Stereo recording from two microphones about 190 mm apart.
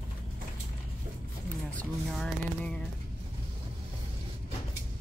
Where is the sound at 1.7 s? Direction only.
5° left (ahead or behind).